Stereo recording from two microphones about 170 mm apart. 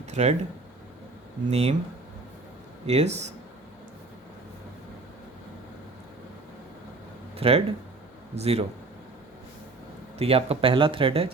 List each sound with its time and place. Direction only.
0.0 s a sound: 40° right (ahead or behind)
1.5 s speech: 40° right (ahead or behind)
2.8 s speech: 40° right (ahead or behind)
7.3 s speech: 35° right (ahead or behind)
10.2 s speech: 35° right (ahead or behind)